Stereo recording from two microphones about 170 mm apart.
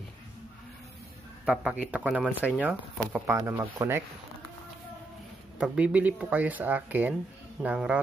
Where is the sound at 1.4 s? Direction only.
5° right (ahead or behind).